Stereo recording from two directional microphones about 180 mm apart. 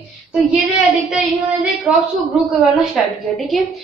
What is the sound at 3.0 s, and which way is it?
Speech, centre (ahead or behind).